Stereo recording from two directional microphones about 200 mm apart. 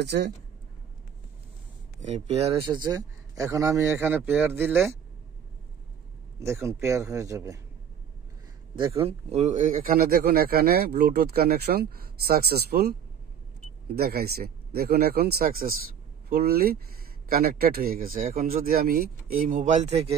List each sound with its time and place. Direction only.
0.0 s speech: 55° right (ahead or behind)
2.0 s speech: 35° right (ahead or behind)
2.6 s speech: 20° right (ahead or behind)
6.4 s speech: 15° right (ahead or behind)
8.7 s a man's voice: 25° right (ahead or behind)
10.2 s speech: 50° right (ahead or behind)
13.9 s speech: 50° right (ahead or behind); by 20.1 s 35° right (ahead or behind)